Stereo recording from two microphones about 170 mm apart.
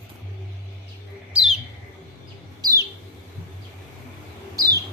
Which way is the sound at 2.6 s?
20° right (ahead or behind).